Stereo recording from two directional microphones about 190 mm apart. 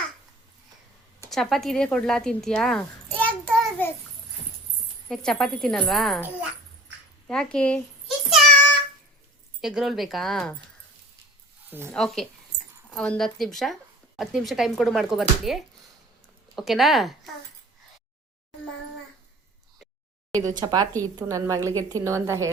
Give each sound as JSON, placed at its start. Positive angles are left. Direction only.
{"t": 1.3, "sound": "speech", "side_deg": 0}
{"t": 5.0, "sound": "speech", "side_deg": 5}
{"t": 7.3, "sound": "a child's voice", "side_deg": 5}
{"t": 9.6, "sound": "speech", "side_deg": 0}
{"t": 11.9, "sound": "speech", "side_deg": 0}
{"t": 20.6, "sound": "a woman's voice", "side_deg": -20}